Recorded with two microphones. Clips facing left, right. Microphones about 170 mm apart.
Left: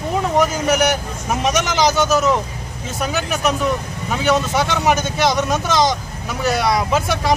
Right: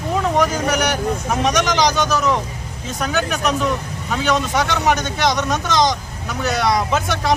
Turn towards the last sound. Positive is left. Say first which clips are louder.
# left 1 dB
turn(degrees=0)  # may be behind; listen again after turning